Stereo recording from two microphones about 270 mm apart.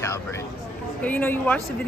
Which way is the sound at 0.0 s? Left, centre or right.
Centre.